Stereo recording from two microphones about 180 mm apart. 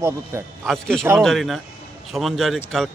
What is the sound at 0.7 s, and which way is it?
A man's voice, 5° left (ahead or behind).